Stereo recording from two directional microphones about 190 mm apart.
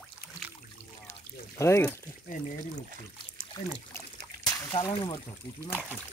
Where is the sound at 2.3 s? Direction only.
45° left (ahead or behind).